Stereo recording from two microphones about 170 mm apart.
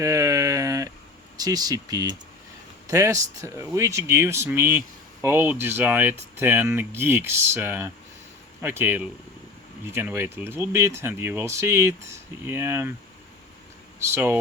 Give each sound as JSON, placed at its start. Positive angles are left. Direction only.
{"t": 0.0, "sound": "a sound", "side_deg": -20}
{"t": 1.4, "sound": "speech", "side_deg": -20}
{"t": 14.1, "sound": "speech", "side_deg": -15}